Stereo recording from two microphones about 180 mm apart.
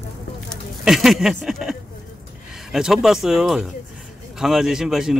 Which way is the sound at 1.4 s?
Centre (ahead or behind).